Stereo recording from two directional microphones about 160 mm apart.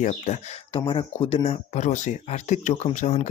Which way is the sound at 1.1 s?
35° left (ahead or behind).